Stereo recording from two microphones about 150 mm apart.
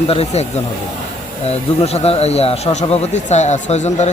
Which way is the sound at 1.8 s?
45° left (ahead or behind).